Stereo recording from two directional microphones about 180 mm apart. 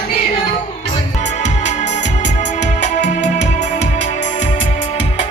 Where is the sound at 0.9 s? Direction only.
40° left (ahead or behind).